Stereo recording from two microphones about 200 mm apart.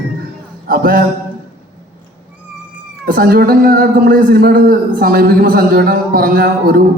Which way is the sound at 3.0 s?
50° right (ahead or behind).